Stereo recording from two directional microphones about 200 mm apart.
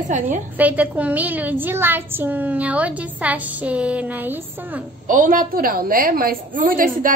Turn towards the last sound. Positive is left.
turn(degrees=-45)  # may be behind; listen again after turning